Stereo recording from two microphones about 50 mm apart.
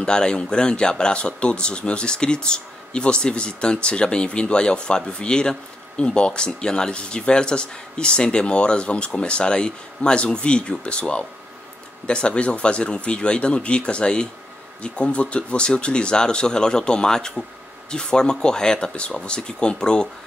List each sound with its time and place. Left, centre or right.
0.0 s speech: centre